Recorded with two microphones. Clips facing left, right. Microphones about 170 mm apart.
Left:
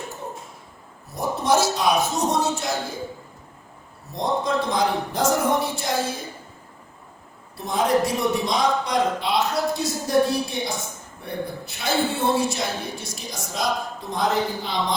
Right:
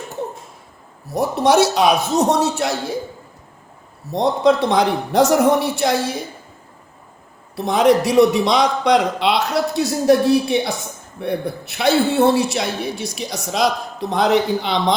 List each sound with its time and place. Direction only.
1.1 s a man's voice: 70° right (ahead or behind)
4.1 s a man's voice: 75° right (ahead or behind)
7.5 s a man's voice: 75° right (ahead or behind)